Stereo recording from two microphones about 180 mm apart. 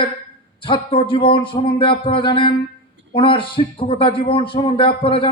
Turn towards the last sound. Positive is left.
turn(degrees=30)  # may be behind; listen again after turning